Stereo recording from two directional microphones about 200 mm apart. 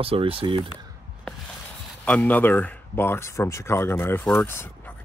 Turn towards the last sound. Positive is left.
turn(degrees=10)  # may be behind; listen again after turning